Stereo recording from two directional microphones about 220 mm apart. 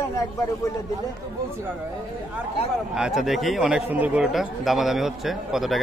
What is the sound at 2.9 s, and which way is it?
Speech, centre (ahead or behind).